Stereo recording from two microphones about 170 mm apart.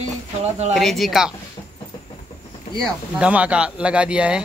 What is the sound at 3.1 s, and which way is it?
Speech, 5° right (ahead or behind).